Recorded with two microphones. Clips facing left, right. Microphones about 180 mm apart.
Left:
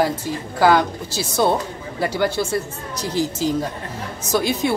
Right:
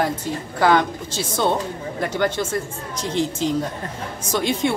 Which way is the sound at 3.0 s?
25° right (ahead or behind).